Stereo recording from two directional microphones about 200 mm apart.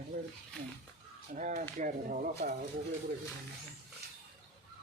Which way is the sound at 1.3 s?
40° right (ahead or behind).